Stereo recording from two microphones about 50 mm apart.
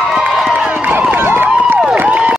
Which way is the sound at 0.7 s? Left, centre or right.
Right.